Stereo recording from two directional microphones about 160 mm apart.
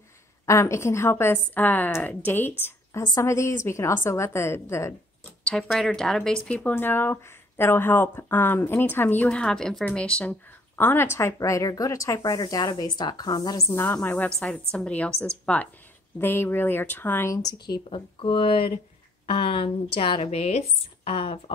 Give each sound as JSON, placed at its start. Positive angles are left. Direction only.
{"t": 0.5, "sound": "speech", "side_deg": 15}
{"t": 5.4, "sound": "speech", "side_deg": 5}